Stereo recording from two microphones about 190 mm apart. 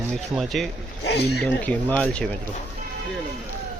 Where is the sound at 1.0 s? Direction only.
65° left (ahead or behind).